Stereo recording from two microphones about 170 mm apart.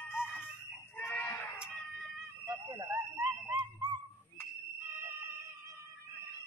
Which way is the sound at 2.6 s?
15° right (ahead or behind).